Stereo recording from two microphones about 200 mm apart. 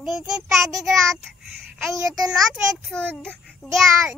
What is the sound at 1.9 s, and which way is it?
Speech, 15° right (ahead or behind).